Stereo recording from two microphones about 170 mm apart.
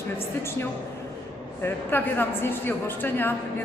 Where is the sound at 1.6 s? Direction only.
10° left (ahead or behind).